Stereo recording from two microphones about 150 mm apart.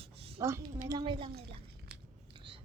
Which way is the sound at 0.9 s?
30° right (ahead or behind).